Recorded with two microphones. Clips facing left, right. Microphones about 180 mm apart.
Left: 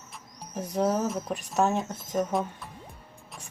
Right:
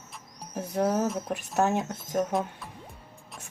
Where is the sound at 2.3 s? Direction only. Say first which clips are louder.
Even; centre (ahead or behind).